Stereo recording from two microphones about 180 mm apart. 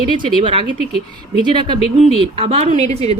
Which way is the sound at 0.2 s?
30° right (ahead or behind).